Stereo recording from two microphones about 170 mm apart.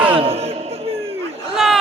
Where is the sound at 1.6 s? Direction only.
Centre (ahead or behind).